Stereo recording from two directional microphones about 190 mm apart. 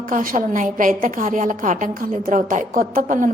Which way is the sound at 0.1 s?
45° right (ahead or behind).